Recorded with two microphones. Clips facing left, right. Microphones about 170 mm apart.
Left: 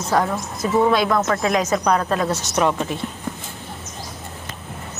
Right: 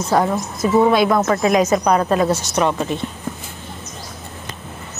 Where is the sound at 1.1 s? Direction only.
15° right (ahead or behind).